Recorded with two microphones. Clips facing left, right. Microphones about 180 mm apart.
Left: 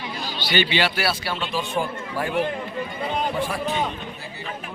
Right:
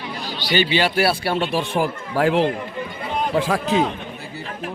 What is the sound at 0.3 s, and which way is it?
A man's voice, 40° right (ahead or behind).